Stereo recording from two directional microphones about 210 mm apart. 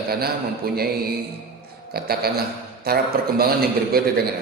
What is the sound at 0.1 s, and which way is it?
Speech, 45° right (ahead or behind).